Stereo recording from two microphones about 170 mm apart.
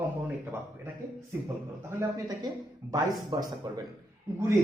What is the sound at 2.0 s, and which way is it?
Speech, 20° right (ahead or behind).